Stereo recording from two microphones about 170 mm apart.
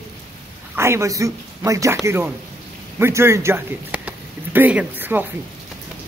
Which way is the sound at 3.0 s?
15° right (ahead or behind).